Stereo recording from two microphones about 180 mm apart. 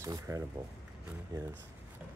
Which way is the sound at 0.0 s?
15° right (ahead or behind).